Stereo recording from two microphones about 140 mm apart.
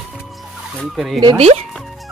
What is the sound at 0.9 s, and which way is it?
Speech, centre (ahead or behind).